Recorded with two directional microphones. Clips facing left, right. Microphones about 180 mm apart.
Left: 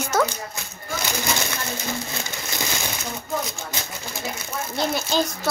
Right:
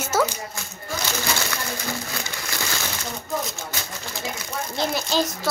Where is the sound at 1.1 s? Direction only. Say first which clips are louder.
Left 1 dB; 20° left (ahead or behind).